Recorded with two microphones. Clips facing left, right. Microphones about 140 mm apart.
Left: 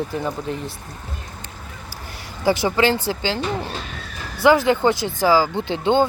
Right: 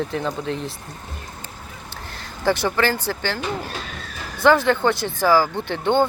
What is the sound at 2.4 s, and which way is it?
Speech, 10° left (ahead or behind).